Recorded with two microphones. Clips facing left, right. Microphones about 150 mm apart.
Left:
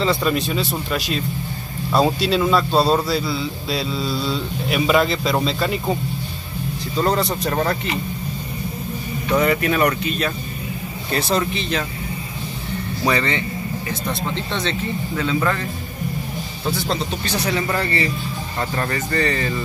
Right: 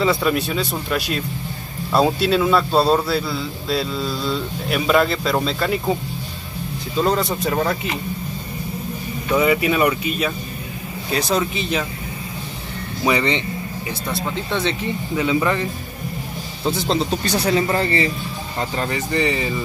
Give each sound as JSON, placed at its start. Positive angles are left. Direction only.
{"t": 0.0, "sound": "a man's voice", "side_deg": -5}
{"t": 7.0, "sound": "a man's voice", "side_deg": 0}
{"t": 9.3, "sound": "a man's voice", "side_deg": -5}
{"t": 13.0, "sound": "speech", "side_deg": -15}
{"t": 16.6, "sound": "speech", "side_deg": -25}
{"t": 18.6, "sound": "speech", "side_deg": -15}